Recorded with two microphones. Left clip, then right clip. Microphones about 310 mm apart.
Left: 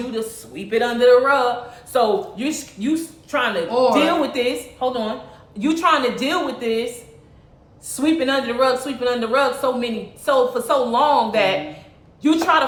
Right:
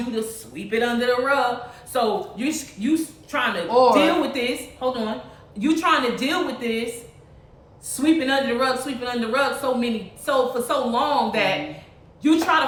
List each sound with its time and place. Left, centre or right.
0.1 s a man's voice: centre
3.7 s speech: centre
3.9 s a man's voice: centre
7.9 s a man's voice: centre